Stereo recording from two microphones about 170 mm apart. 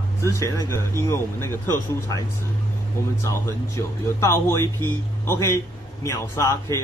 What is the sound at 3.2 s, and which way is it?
Speech, 15° left (ahead or behind).